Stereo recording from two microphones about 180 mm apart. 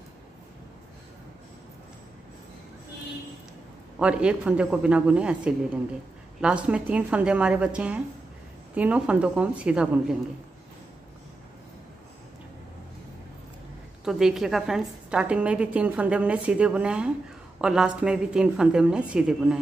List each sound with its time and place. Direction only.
4.0 s a woman's voice: 5° right (ahead or behind)
14.0 s a woman's voice: centre (ahead or behind)